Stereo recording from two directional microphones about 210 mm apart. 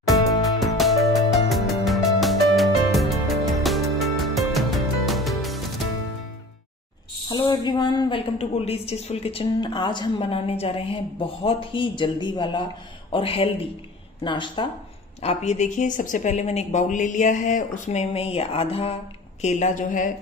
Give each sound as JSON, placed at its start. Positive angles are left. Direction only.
{"t": 0.7, "sound": "music", "side_deg": 0}
{"t": 7.2, "sound": "a woman's voice", "side_deg": 20}
{"t": 15.2, "sound": "speech", "side_deg": 35}